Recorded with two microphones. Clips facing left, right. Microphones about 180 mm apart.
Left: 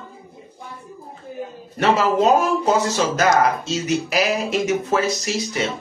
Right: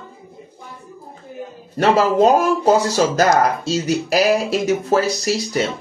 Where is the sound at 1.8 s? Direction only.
35° right (ahead or behind).